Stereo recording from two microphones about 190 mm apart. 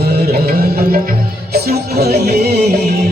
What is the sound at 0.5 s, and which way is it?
Music, 55° right (ahead or behind).